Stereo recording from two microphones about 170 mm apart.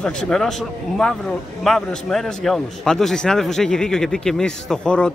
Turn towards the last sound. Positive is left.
turn(degrees=5)  # may be behind; listen again after turning